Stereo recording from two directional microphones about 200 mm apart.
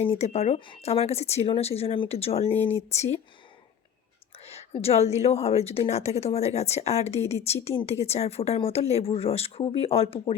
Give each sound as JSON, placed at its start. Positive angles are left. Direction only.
{"t": 0.0, "sound": "a woman's voice", "side_deg": 30}
{"t": 4.4, "sound": "a woman's voice", "side_deg": 30}